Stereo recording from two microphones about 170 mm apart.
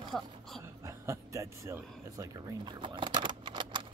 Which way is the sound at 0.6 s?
15° right (ahead or behind).